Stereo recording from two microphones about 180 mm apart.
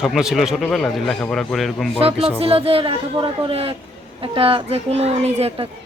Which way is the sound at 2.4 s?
30° right (ahead or behind).